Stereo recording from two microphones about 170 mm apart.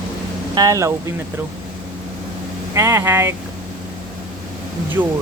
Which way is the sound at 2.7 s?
15° right (ahead or behind).